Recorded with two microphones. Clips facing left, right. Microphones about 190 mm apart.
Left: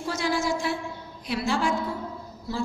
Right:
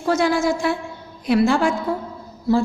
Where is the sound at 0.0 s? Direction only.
60° right (ahead or behind).